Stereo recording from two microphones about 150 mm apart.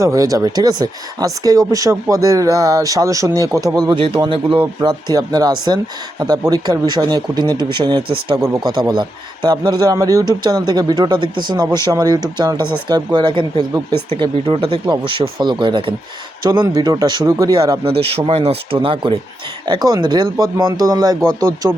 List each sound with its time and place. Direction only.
0.0 s speech: 20° right (ahead or behind)
8.4 s speech: 20° right (ahead or behind)
8.9 s speech: 30° right (ahead or behind)
17.6 s speech: 35° right (ahead or behind)